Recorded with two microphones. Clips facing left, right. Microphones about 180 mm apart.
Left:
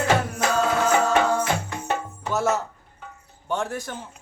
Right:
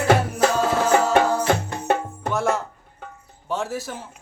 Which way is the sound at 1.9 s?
55° right (ahead or behind).